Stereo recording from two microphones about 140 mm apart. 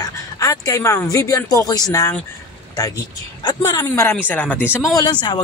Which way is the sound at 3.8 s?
20° left (ahead or behind).